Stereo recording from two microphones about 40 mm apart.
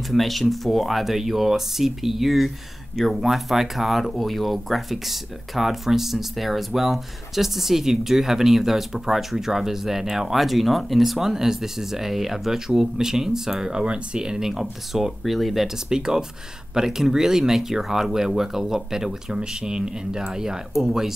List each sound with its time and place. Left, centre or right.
0.1 s speech: centre
14.5 s speech: centre
15.9 s speech: centre